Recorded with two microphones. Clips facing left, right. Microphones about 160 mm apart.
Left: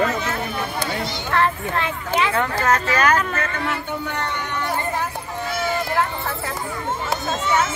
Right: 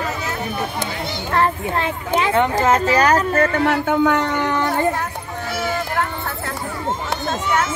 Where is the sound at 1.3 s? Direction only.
35° right (ahead or behind).